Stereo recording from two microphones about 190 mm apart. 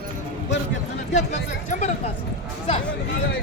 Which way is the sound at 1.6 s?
40° left (ahead or behind).